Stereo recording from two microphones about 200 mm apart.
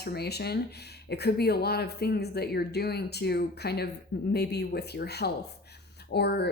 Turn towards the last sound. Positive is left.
turn(degrees=55)  # may be behind; listen again after turning